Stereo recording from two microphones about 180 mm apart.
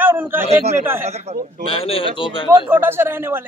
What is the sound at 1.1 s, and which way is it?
Speech, 35° right (ahead or behind).